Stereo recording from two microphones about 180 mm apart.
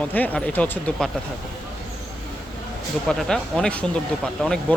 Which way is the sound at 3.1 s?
5° left (ahead or behind).